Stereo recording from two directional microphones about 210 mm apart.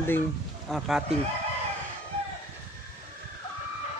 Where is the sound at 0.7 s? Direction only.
Centre (ahead or behind).